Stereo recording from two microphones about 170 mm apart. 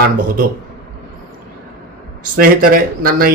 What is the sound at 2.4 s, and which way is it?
Speech, 60° right (ahead or behind).